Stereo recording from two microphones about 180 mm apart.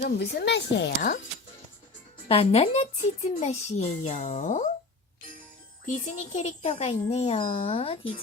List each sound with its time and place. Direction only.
0.0 s speech: 65° left (ahead or behind)
2.2 s speech: 30° left (ahead or behind)
5.8 s speech: 45° left (ahead or behind)